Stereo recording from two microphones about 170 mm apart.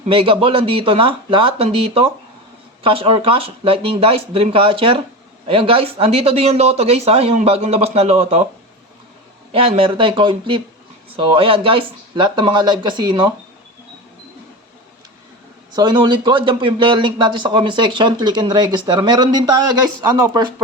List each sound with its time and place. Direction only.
0.1 s speech: 30° right (ahead or behind)
9.5 s speech: 35° right (ahead or behind)
15.7 s speech: 25° right (ahead or behind)